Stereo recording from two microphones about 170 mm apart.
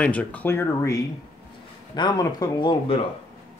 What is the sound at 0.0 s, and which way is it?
Speech, 10° left (ahead or behind).